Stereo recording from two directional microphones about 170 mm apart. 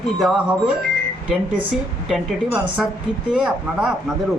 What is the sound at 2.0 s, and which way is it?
Speech, 5° right (ahead or behind).